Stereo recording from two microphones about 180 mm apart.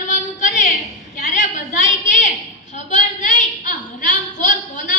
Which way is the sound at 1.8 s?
40° left (ahead or behind).